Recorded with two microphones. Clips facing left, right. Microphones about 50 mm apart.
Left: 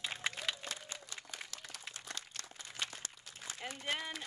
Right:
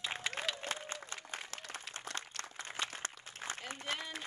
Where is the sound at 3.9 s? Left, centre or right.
Left.